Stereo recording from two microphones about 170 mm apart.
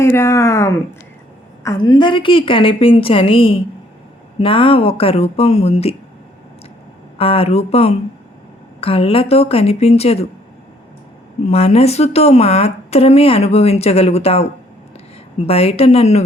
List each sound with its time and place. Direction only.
0.0 s a woman's voice: 15° left (ahead or behind); by 5.9 s 35° left (ahead or behind)
7.2 s a woman's voice: 35° left (ahead or behind)
11.4 s a woman's voice: 40° left (ahead or behind)